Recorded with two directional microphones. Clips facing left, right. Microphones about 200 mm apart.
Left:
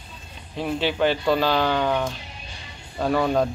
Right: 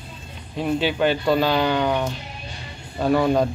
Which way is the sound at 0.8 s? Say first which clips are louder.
Even; 5° right (ahead or behind).